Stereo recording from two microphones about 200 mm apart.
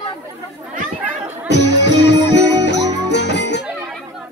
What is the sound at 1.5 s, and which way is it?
Music, 60° left (ahead or behind).